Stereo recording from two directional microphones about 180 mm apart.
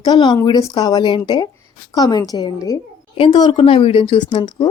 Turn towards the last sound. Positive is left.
turn(degrees=25)  # may be behind; listen again after turning